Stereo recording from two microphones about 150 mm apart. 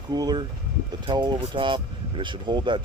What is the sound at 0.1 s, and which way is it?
Speech, 25° right (ahead or behind).